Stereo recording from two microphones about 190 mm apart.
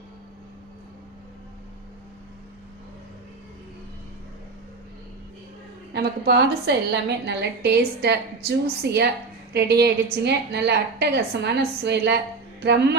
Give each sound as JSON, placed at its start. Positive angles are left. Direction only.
{"t": 5.9, "sound": "a woman's voice", "side_deg": -55}